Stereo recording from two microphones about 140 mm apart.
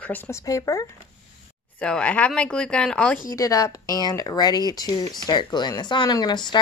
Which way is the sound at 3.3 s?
25° left (ahead or behind).